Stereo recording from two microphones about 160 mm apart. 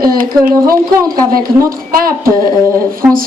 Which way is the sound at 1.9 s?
65° right (ahead or behind).